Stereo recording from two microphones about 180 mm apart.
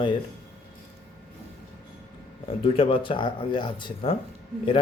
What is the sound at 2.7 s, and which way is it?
A man's voice, 30° left (ahead or behind).